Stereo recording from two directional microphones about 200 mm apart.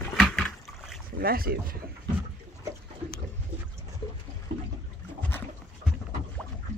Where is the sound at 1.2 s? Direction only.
50° right (ahead or behind).